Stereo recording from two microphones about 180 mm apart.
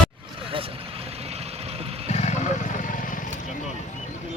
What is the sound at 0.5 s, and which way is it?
Vehicle, 30° right (ahead or behind).